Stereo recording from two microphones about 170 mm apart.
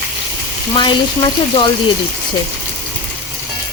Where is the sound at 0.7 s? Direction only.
25° left (ahead or behind).